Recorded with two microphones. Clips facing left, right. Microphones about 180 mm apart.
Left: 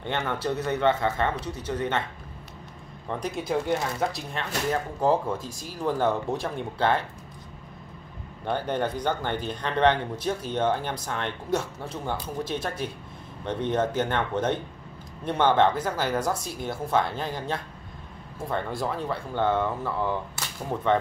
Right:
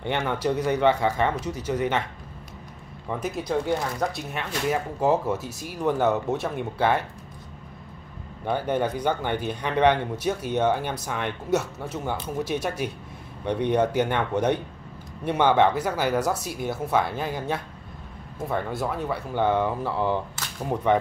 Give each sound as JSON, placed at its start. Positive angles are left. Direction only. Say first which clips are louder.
{"t": 0.0, "sound": "speech", "louder": "right 3 dB", "side_deg": -15}
{"t": 1.4, "sound": "speech", "louder": "right 3 dB", "side_deg": 30}
{"t": 1.7, "sound": "speech", "louder": "right 3 dB", "side_deg": -10}
{"t": 3.1, "sound": "speech", "louder": "right 1 dB", "side_deg": -5}
{"t": 8.5, "sound": "speech", "louder": "right 2 dB", "side_deg": -10}